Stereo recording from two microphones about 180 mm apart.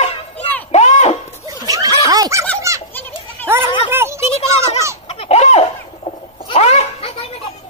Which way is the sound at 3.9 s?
15° right (ahead or behind).